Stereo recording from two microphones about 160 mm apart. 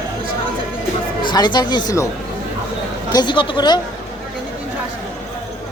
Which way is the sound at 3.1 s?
25° left (ahead or behind).